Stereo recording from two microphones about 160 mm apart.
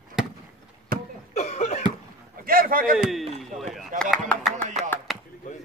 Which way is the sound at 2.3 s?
65° right (ahead or behind).